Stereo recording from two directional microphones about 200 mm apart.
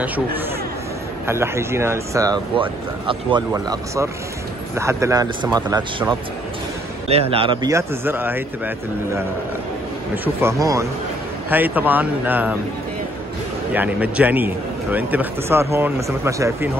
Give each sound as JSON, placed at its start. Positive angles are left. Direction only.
{"t": 1.2, "sound": "a man's voice", "side_deg": -15}
{"t": 7.7, "sound": "a man's voice", "side_deg": -10}
{"t": 13.7, "sound": "a man's voice", "side_deg": -5}